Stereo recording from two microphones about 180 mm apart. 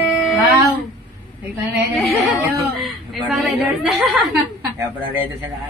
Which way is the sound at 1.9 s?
Centre (ahead or behind).